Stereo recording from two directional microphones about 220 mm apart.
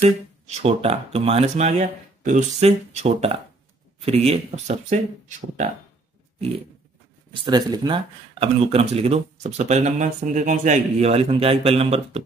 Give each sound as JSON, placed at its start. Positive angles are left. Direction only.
{"t": 0.5, "sound": "speech", "side_deg": -30}
{"t": 7.4, "sound": "speech", "side_deg": -20}